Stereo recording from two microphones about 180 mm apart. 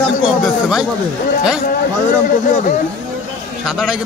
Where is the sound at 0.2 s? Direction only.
5° right (ahead or behind).